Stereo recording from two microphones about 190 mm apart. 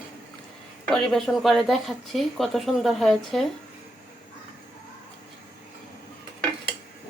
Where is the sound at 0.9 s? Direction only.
Centre (ahead or behind).